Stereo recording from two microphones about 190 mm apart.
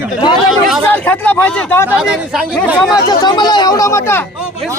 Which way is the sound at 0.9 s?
10° left (ahead or behind).